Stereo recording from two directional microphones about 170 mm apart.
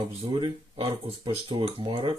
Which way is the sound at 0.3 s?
30° right (ahead or behind).